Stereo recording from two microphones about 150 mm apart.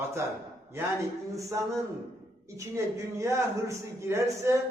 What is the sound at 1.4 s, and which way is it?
A man's voice, 20° right (ahead or behind).